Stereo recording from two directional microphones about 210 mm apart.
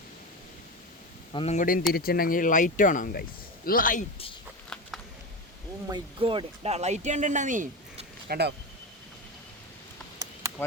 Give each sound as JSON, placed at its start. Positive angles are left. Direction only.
{"t": 1.3, "sound": "speech", "side_deg": 30}
{"t": 4.7, "sound": "a sound", "side_deg": 5}
{"t": 5.9, "sound": "speech", "side_deg": -25}